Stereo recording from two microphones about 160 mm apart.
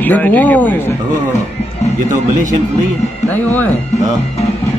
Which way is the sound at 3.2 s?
10° left (ahead or behind).